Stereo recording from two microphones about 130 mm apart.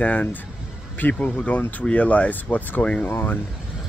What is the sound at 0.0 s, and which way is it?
Speech, 15° left (ahead or behind).